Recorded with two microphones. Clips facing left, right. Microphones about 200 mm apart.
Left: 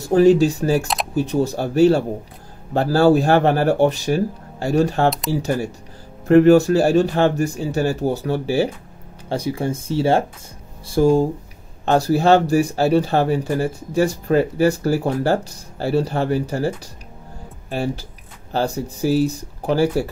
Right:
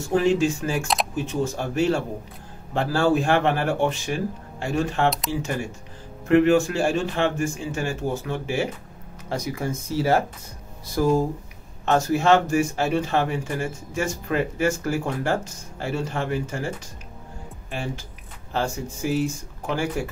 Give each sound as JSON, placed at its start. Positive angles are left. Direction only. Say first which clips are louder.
{"t": 0.0, "sound": "speech", "louder": "left 7 dB", "side_deg": 40}